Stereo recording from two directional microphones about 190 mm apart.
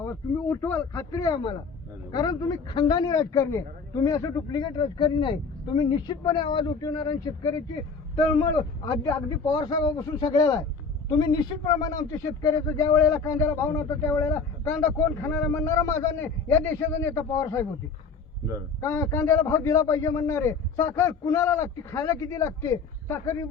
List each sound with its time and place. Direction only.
0.0 s a man's voice: 15° left (ahead or behind)
18.8 s a man's voice: 15° left (ahead or behind)